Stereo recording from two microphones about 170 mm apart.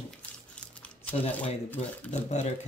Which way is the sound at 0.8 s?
5° left (ahead or behind).